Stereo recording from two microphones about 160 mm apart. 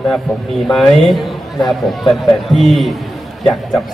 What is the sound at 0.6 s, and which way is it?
Speech, centre (ahead or behind).